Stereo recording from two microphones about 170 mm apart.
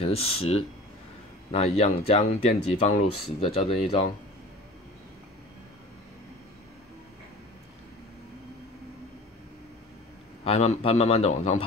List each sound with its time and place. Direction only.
0.0 s speech: 35° left (ahead or behind)
10.4 s speech: 40° left (ahead or behind)